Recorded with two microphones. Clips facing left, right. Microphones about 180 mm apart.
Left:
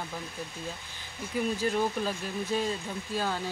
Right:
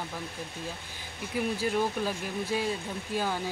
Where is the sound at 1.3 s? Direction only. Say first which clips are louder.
Even; 10° right (ahead or behind).